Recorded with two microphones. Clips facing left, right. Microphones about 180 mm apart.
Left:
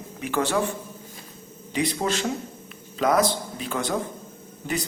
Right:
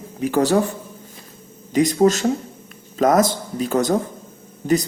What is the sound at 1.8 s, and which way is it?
Speech, 45° right (ahead or behind).